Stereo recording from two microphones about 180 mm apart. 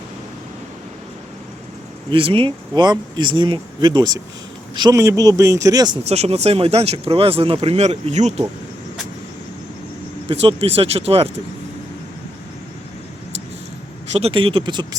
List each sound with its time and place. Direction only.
2.0 s speech: 30° right (ahead or behind)
6.1 s speech: 35° right (ahead or behind)
10.2 s speech: 30° right (ahead or behind)
14.1 s speech: 30° right (ahead or behind)